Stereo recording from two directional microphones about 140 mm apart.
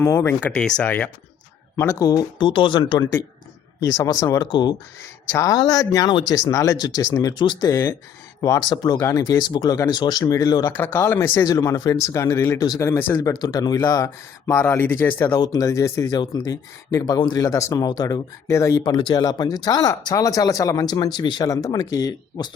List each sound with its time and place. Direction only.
0.0 s speech: 20° left (ahead or behind)
2.0 s speech: 25° left (ahead or behind)
7.7 s speech: 15° left (ahead or behind)
10.7 s speech: 15° left (ahead or behind)